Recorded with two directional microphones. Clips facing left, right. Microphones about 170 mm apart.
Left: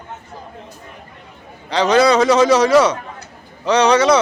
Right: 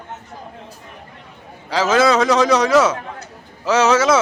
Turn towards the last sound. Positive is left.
turn(degrees=-5)  # may be behind; listen again after turning